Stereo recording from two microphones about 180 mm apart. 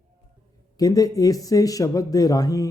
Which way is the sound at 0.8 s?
20° left (ahead or behind).